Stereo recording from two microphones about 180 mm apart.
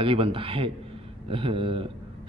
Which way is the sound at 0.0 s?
30° right (ahead or behind).